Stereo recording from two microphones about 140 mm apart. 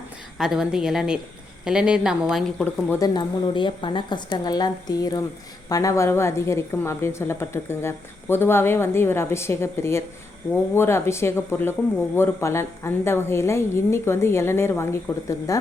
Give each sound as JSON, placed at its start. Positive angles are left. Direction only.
{"t": 0.3, "sound": "a woman's voice", "side_deg": -5}
{"t": 3.0, "sound": "a woman's voice", "side_deg": 35}